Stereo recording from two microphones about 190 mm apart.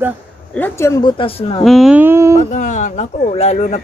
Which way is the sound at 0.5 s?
10° left (ahead or behind).